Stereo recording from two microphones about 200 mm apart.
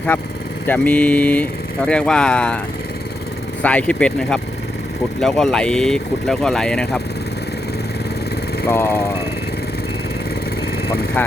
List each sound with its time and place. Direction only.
0.1 s speech: 10° left (ahead or behind)
3.6 s speech: 5° left (ahead or behind)
8.6 s speech: 10° left (ahead or behind)